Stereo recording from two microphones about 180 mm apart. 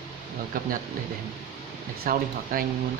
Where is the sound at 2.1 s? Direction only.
55° right (ahead or behind).